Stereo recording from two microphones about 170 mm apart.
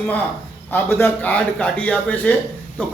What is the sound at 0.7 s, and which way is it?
A man's voice, 15° left (ahead or behind).